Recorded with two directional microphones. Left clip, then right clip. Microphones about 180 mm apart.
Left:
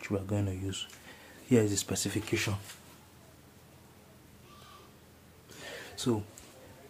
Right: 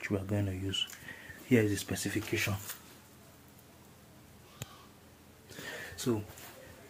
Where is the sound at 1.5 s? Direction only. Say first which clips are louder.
Left 1 dB; 15° left (ahead or behind).